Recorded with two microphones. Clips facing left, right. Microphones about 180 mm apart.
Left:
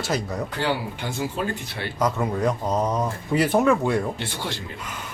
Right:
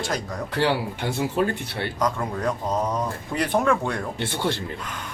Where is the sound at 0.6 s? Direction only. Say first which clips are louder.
Right 5 dB; 65° right (ahead or behind).